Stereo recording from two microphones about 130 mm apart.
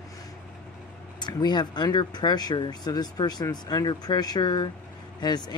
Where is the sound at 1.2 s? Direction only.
35° left (ahead or behind).